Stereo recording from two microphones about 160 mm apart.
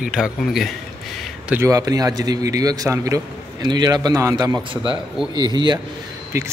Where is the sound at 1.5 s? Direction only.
20° right (ahead or behind).